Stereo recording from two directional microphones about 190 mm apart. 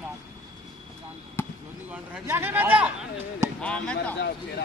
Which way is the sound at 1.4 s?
10° left (ahead or behind).